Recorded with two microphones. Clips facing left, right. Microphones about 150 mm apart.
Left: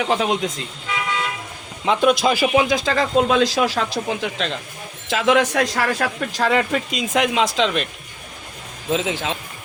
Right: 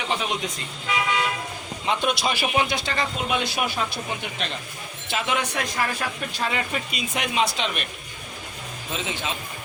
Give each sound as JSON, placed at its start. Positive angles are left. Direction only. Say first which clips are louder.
{"t": 0.0, "sound": "speech", "louder": "left 7 dB", "side_deg": 90}
{"t": 1.8, "sound": "speech", "louder": "left 8 dB", "side_deg": 90}
{"t": 8.9, "sound": "speech", "louder": "left 9 dB", "side_deg": 90}